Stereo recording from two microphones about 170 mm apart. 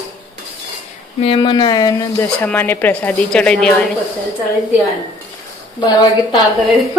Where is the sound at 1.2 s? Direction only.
30° left (ahead or behind).